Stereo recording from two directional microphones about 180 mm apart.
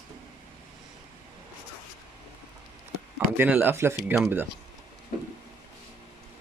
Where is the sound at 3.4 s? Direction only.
10° right (ahead or behind).